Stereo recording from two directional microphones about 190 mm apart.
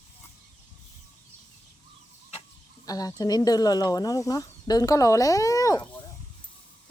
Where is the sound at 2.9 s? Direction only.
20° left (ahead or behind).